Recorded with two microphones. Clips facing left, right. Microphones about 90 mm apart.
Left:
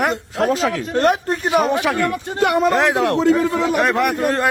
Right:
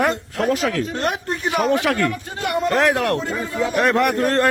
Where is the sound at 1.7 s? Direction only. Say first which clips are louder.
Left 1 dB; 20° left (ahead or behind).